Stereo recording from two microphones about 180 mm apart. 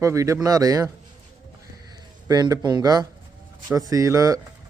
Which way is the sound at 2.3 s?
20° right (ahead or behind).